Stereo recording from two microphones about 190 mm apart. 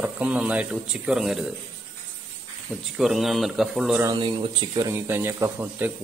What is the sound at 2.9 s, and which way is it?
A man's voice, centre (ahead or behind).